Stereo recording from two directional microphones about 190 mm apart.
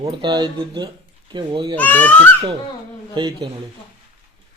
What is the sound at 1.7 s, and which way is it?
Speech, 10° left (ahead or behind).